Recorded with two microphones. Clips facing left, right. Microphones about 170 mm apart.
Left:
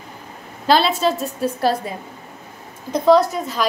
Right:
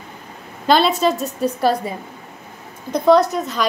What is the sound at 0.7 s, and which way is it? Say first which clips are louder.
A woman's voice: right 1 dB; centre (ahead or behind).